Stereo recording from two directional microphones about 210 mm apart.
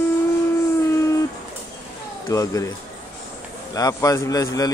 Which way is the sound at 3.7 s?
15° left (ahead or behind).